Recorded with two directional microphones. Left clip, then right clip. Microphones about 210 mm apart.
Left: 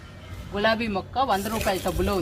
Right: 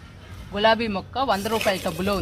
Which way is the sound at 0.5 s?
45° right (ahead or behind).